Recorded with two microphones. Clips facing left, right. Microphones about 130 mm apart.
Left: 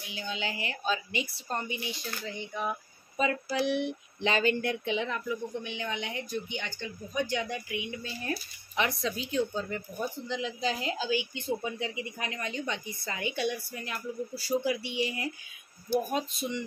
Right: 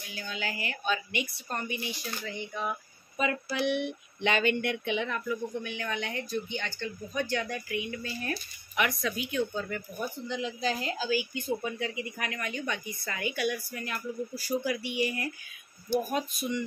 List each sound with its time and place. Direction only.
0.1 s speech: 20° left (ahead or behind)
3.2 s speech: 30° left (ahead or behind)